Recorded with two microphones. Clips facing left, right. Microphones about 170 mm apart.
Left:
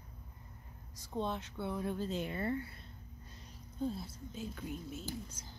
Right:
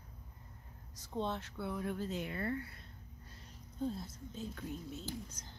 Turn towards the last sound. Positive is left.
turn(degrees=10)  # may be behind; listen again after turning